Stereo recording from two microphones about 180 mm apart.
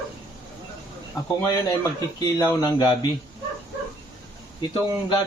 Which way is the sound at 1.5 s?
20° left (ahead or behind).